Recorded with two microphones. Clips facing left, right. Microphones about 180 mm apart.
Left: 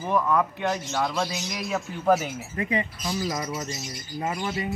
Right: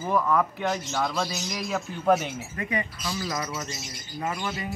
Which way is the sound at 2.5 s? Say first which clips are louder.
Left 5 dB; 25° left (ahead or behind).